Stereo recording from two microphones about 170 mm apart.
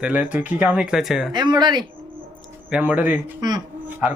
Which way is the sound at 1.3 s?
25° right (ahead or behind).